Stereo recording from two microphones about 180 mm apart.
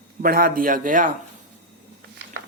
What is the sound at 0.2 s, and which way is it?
Speech, 55° right (ahead or behind).